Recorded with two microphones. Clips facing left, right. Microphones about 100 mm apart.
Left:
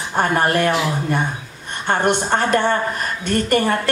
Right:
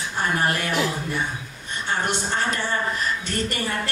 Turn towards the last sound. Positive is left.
turn(degrees=55)  # may be behind; listen again after turning